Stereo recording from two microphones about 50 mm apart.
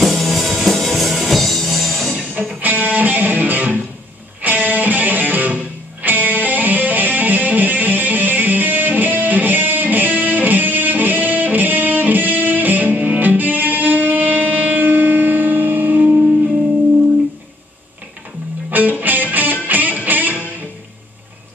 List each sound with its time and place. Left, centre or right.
0.0 s music: centre
2.6 s music: right
18.7 s music: right